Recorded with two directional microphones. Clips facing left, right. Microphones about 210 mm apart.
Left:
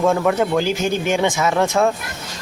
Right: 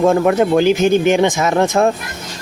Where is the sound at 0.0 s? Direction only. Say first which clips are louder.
Right 4 dB; 40° right (ahead or behind).